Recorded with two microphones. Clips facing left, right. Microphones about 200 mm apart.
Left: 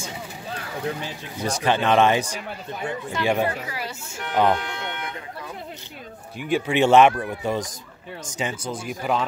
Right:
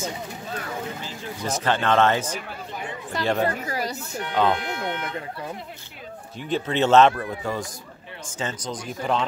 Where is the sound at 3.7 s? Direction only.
40° right (ahead or behind).